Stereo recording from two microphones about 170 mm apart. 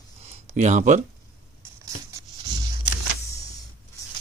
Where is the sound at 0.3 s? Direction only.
45° right (ahead or behind).